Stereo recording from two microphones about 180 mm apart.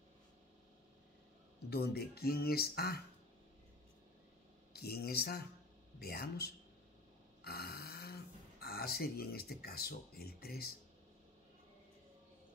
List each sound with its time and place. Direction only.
1.7 s speech: 65° left (ahead or behind)
4.7 s speech: 60° left (ahead or behind)